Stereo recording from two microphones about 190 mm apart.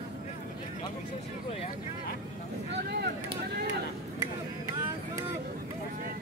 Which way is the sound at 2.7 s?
60° right (ahead or behind).